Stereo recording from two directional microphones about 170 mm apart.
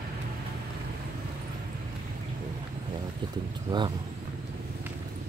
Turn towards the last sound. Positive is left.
turn(degrees=-25)  # may be behind; listen again after turning